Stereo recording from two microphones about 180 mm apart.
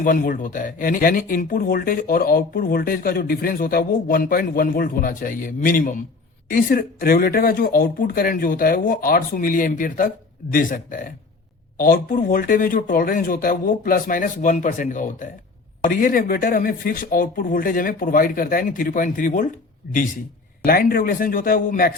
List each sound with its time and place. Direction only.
0.0 s speech: 50° left (ahead or behind)
20.7 s a man's voice: 55° left (ahead or behind)